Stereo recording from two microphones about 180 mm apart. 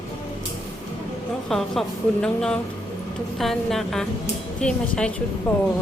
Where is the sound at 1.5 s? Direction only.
Centre (ahead or behind).